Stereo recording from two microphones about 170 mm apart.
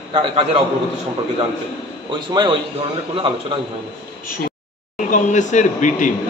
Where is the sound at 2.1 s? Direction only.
30° right (ahead or behind).